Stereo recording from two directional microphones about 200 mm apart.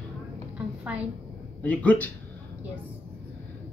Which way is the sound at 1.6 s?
5° left (ahead or behind).